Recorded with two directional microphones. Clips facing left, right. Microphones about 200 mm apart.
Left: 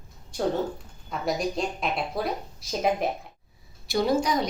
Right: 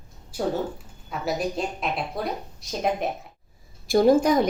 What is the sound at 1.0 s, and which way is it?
Speech, 5° right (ahead or behind).